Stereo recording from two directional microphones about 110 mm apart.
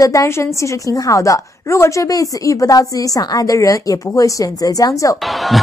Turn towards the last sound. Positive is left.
turn(degrees=0)  # may be behind; listen again after turning